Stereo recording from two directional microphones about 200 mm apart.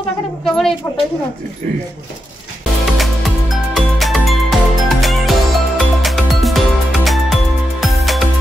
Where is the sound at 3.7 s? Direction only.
Centre (ahead or behind).